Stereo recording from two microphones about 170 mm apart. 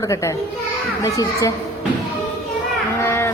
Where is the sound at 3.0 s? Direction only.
15° left (ahead or behind).